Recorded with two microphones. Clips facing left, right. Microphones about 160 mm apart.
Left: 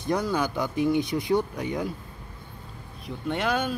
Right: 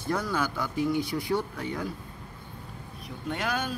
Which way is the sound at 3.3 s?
25° left (ahead or behind).